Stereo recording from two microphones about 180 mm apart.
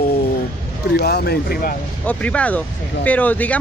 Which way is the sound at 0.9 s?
65° left (ahead or behind).